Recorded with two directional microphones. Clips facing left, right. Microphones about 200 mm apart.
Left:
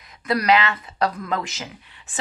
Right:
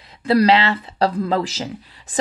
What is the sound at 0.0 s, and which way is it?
Speech, 30° right (ahead or behind).